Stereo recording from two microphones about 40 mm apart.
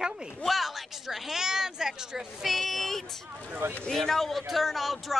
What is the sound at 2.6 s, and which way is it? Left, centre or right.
Speech, centre.